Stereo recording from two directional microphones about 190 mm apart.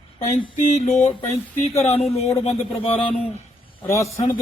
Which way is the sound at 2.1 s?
30° left (ahead or behind).